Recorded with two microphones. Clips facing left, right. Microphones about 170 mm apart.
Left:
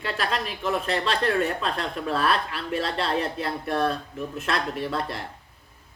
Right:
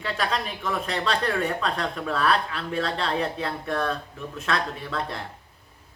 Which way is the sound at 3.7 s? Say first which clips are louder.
Left 2 dB; 30° left (ahead or behind).